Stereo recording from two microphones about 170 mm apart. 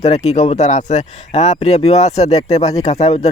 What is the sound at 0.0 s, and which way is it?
Speech, 40° left (ahead or behind).